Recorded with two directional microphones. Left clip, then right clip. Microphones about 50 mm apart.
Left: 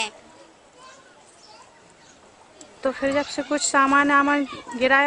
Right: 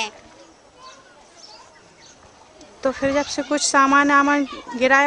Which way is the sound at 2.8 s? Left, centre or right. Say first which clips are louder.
Right 2 dB; right.